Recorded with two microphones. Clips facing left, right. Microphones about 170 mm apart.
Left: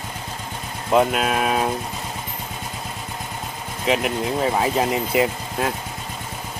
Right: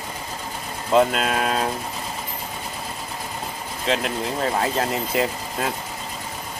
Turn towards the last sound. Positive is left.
turn(degrees=5)  # may be behind; listen again after turning